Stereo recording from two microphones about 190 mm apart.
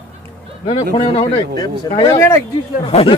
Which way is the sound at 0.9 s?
25° left (ahead or behind).